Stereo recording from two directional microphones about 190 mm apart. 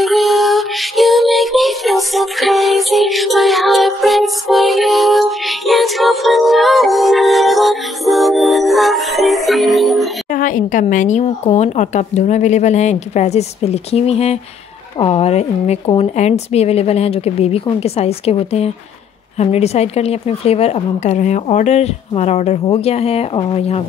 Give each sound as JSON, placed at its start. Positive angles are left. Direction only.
{"t": 0.0, "sound": "music", "side_deg": 0}
{"t": 10.3, "sound": "a woman's voice", "side_deg": 45}